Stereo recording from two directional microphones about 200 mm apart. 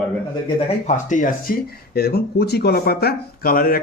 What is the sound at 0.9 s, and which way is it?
Speech, 40° left (ahead or behind).